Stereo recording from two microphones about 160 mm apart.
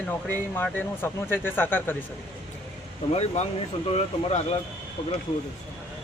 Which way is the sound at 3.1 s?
40° left (ahead or behind).